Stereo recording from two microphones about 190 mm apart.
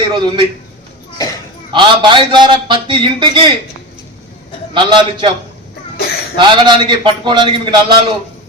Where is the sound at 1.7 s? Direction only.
25° right (ahead or behind).